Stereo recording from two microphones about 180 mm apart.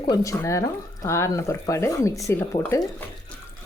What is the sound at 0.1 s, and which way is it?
Speech, 20° left (ahead or behind).